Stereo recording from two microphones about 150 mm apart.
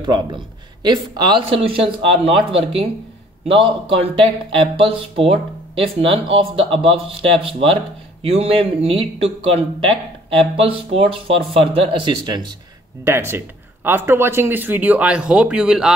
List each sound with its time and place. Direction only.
0.0 s speech: 30° right (ahead or behind)
13.8 s speech: 15° right (ahead or behind)